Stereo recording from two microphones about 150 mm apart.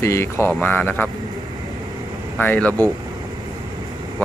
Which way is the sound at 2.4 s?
10° left (ahead or behind).